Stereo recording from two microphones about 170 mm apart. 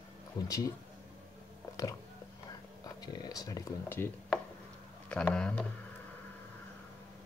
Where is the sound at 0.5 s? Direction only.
20° left (ahead or behind).